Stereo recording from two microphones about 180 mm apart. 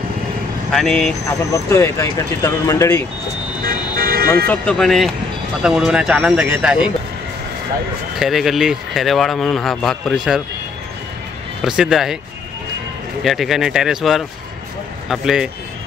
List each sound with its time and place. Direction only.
0.7 s speech: centre (ahead or behind)
1.5 s speech: 15° left (ahead or behind)
3.6 s vehicle: 55° right (ahead or behind)
4.5 s speech: 5° left (ahead or behind)
8.2 s speech: centre (ahead or behind)
11.6 s speech: 5° right (ahead or behind)
13.2 s speech: centre (ahead or behind)